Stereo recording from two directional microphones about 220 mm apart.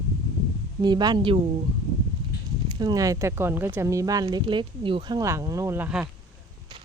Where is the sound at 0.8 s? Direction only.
20° right (ahead or behind).